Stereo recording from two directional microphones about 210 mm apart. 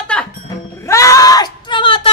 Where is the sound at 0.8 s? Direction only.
15° left (ahead or behind).